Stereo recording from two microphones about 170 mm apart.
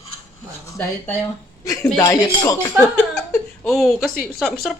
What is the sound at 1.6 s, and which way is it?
Speech, 20° left (ahead or behind).